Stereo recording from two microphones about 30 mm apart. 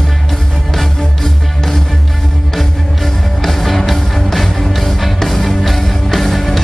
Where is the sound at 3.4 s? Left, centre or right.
Centre.